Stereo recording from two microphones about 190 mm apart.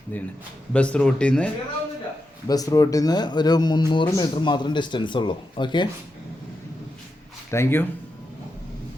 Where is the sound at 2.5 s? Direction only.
20° left (ahead or behind).